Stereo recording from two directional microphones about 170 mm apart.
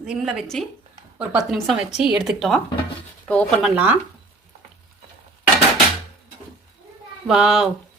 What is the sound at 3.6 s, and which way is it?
Speech, 10° right (ahead or behind).